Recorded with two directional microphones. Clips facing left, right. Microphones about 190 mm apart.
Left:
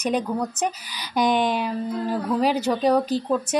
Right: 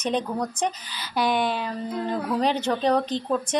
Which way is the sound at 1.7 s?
5° left (ahead or behind).